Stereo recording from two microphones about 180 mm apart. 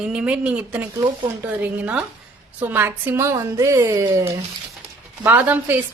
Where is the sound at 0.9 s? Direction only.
20° right (ahead or behind).